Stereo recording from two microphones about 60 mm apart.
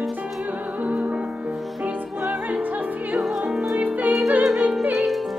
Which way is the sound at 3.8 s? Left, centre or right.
Right.